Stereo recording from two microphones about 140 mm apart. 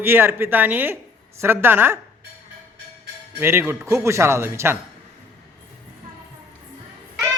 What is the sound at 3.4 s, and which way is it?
A man's voice, 15° right (ahead or behind).